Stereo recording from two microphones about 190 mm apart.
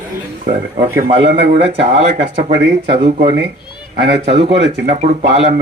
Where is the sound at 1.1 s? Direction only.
30° right (ahead or behind).